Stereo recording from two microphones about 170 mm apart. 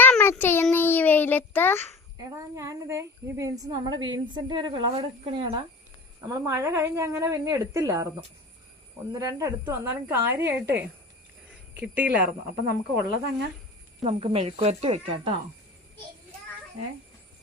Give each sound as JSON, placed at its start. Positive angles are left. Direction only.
{"t": 0.0, "sound": "child singing", "side_deg": 10}
{"t": 2.1, "sound": "a woman's voice", "side_deg": -20}
{"t": 6.2, "sound": "a woman's voice", "side_deg": -20}
{"t": 9.1, "sound": "a woman's voice", "side_deg": -20}
{"t": 14.0, "sound": "speech", "side_deg": -35}